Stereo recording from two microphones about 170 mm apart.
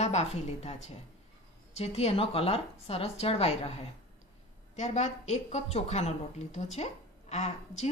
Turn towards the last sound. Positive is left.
turn(degrees=40)  # may be behind; listen again after turning